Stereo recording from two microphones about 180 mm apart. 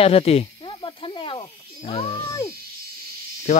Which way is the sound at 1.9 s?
35° left (ahead or behind).